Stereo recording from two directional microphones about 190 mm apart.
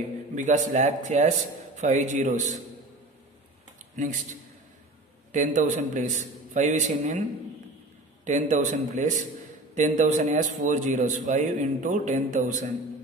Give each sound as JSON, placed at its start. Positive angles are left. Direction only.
{"t": 0.4, "sound": "a man's voice", "side_deg": -40}
{"t": 3.9, "sound": "a man's voice", "side_deg": -40}
{"t": 8.3, "sound": "a man's voice", "side_deg": -40}